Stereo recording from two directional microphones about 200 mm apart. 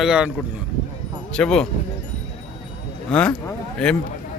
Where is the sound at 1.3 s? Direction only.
5° left (ahead or behind).